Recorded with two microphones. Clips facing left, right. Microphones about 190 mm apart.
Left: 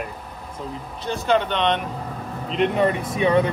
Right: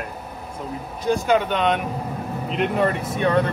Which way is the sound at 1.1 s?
10° right (ahead or behind).